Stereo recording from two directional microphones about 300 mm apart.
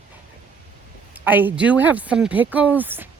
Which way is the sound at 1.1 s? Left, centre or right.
Centre.